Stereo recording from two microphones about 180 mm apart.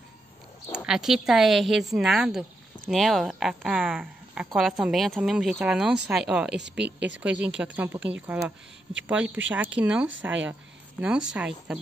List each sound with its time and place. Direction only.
0.7 s speech: 5° right (ahead or behind)
6.8 s speech: 75° right (ahead or behind)
7.2 s a woman's voice: 5° right (ahead or behind)